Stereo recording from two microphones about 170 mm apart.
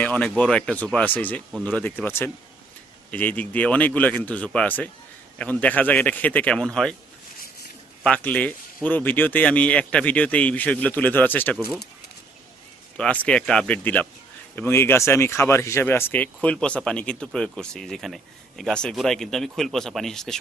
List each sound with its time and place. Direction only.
0.0 s speech: 10° left (ahead or behind)
8.0 s speech: 10° left (ahead or behind)
13.0 s speech: 5° left (ahead or behind)